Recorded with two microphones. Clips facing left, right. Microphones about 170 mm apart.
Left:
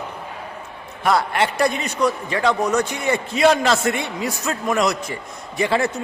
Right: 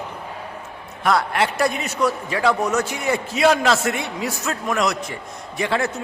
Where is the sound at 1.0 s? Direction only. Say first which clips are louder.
Left 1 dB; centre (ahead or behind).